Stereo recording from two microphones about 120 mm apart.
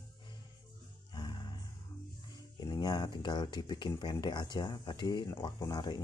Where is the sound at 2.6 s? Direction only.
35° left (ahead or behind).